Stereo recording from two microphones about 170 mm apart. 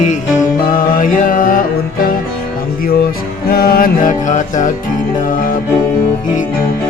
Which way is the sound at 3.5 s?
60° left (ahead or behind).